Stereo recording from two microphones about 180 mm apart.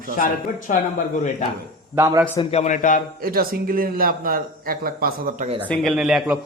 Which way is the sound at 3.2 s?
55° right (ahead or behind).